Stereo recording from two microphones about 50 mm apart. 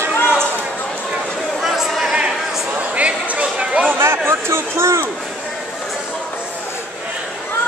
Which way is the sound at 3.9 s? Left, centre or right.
Right.